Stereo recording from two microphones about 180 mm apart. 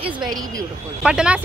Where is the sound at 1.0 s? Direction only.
5° right (ahead or behind).